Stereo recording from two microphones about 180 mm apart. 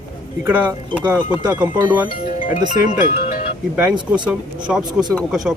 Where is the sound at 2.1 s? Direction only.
50° left (ahead or behind).